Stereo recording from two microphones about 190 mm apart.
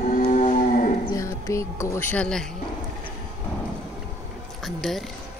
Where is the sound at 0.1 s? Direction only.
40° left (ahead or behind).